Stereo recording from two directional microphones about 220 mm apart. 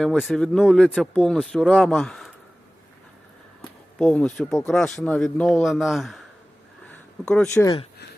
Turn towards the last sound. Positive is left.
turn(degrees=5)  # may be behind; listen again after turning